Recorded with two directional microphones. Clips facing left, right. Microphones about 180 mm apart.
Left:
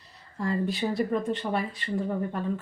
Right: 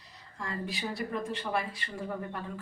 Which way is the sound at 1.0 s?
35° left (ahead or behind).